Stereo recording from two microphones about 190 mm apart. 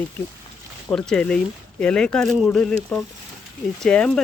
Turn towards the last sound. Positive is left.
turn(degrees=5)  # may be behind; listen again after turning